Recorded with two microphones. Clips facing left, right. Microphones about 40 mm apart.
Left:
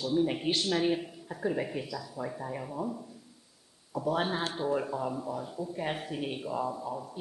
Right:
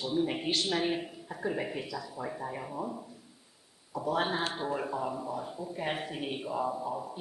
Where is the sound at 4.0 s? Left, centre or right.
Centre.